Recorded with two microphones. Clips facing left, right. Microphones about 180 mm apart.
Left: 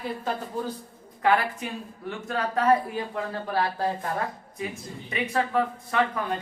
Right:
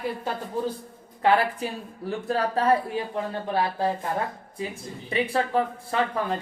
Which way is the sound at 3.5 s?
15° right (ahead or behind).